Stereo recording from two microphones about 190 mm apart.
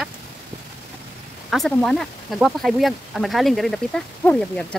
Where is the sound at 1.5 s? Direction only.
Centre (ahead or behind).